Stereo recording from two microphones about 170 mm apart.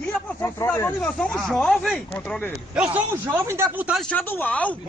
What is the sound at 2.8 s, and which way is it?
Speech, 10° right (ahead or behind).